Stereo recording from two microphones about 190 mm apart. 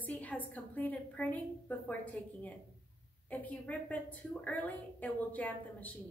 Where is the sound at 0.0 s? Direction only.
10° left (ahead or behind).